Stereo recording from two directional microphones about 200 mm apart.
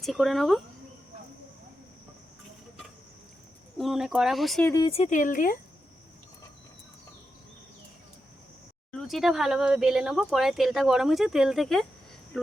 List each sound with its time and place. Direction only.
0.0 s speech: centre (ahead or behind)
3.8 s speech: centre (ahead or behind)
4.7 s speech: 25° left (ahead or behind); by 5.5 s 40° left (ahead or behind)
8.9 s speech: centre (ahead or behind)